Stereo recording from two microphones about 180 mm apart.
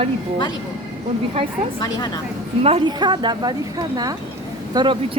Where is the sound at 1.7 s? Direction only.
25° left (ahead or behind).